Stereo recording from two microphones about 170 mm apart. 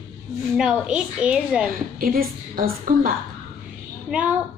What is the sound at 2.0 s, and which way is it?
A woman's voice, 60° right (ahead or behind).